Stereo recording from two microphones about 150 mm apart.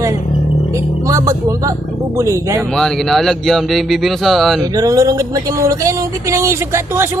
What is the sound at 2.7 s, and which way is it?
Speech, centre (ahead or behind).